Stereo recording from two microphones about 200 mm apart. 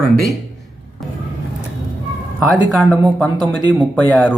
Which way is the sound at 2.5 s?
5° left (ahead or behind).